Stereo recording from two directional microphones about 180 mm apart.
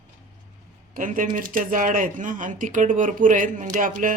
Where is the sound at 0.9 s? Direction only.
50° right (ahead or behind).